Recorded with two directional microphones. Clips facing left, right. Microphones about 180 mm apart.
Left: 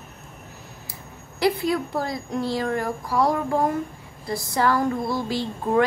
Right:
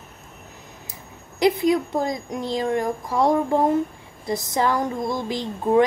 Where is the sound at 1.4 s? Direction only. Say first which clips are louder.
Right 3 dB; 20° right (ahead or behind).